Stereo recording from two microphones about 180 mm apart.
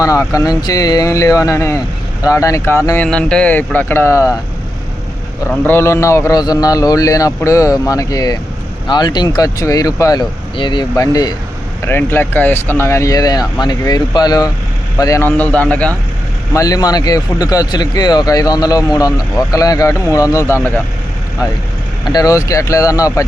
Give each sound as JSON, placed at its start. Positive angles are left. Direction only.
{"t": 0.0, "sound": "a man's voice", "side_deg": 20}
{"t": 5.5, "sound": "a man's voice", "side_deg": 10}
{"t": 16.6, "sound": "a man's voice", "side_deg": 20}
{"t": 22.0, "sound": "speech", "side_deg": 20}